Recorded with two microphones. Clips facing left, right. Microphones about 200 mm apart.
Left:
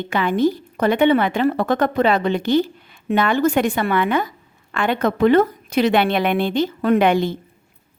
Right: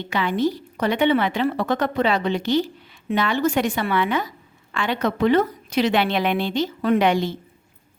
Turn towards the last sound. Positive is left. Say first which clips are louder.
# left 3 dB
turn(degrees=55)  # may be behind; listen again after turning